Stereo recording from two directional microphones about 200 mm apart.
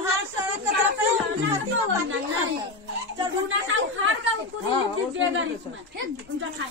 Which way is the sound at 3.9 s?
90° right.